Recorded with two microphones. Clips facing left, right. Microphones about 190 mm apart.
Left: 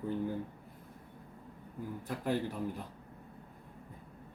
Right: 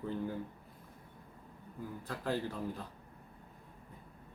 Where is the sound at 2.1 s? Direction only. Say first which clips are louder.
Left 2 dB; 15° left (ahead or behind).